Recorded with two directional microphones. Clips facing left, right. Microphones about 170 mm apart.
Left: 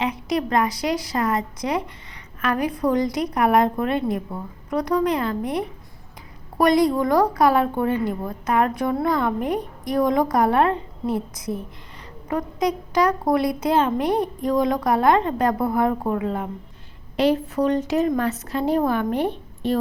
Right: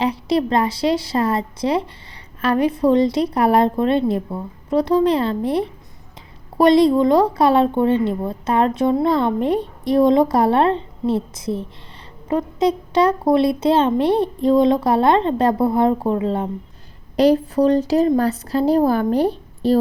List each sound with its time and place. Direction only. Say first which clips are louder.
0.0 s a woman's voice: right 5 dB; 30° right (ahead or behind)